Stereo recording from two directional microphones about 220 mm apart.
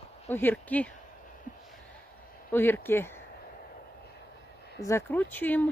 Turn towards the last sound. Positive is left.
turn(degrees=10)  # may be behind; listen again after turning